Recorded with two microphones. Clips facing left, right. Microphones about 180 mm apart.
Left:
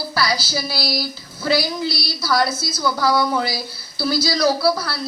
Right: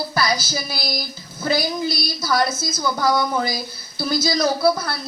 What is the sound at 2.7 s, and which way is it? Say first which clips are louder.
Speech: left 1 dB; 20° right (ahead or behind).